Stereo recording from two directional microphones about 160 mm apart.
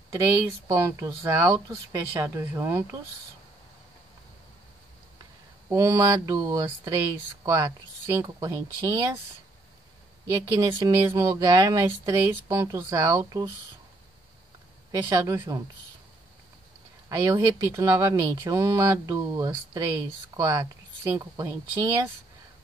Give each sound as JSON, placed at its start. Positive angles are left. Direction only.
{"t": 0.1, "sound": "speech", "side_deg": -15}
{"t": 5.7, "sound": "speech", "side_deg": -20}
{"t": 10.4, "sound": "speech", "side_deg": -20}
{"t": 14.9, "sound": "speech", "side_deg": -20}
{"t": 17.1, "sound": "speech", "side_deg": -20}